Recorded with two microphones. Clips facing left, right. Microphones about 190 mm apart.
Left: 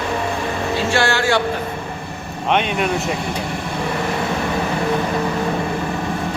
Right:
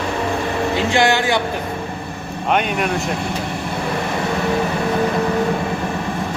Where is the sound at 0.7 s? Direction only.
15° right (ahead or behind).